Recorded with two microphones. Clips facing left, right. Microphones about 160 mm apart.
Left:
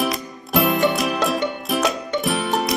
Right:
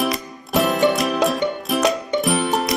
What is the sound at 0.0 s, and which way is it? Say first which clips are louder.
Music: right 1 dB; centre (ahead or behind).